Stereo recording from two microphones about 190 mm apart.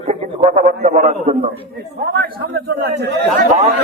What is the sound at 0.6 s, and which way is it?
Speech, 40° right (ahead or behind).